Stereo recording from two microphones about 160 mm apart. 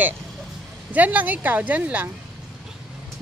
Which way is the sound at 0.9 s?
10° right (ahead or behind).